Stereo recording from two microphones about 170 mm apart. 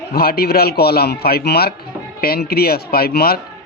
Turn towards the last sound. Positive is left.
turn(degrees=65)  # may be behind; listen again after turning